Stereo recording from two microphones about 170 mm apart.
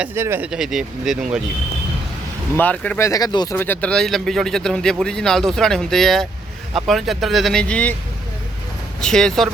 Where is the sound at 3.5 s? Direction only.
10° left (ahead or behind).